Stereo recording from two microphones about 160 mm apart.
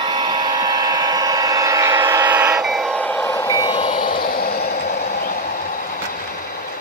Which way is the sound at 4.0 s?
70° left (ahead or behind).